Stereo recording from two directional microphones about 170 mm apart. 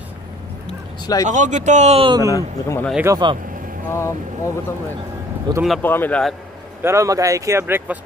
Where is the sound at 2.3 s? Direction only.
15° left (ahead or behind).